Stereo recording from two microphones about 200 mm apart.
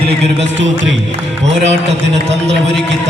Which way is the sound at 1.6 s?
35° right (ahead or behind).